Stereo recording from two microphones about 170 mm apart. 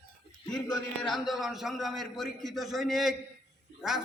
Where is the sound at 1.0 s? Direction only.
Centre (ahead or behind).